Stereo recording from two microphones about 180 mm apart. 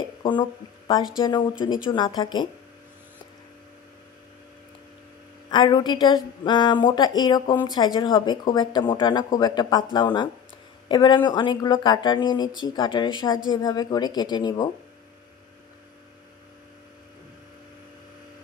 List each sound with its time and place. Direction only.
0.2 s speech: 25° left (ahead or behind)
5.5 s speech: 25° left (ahead or behind)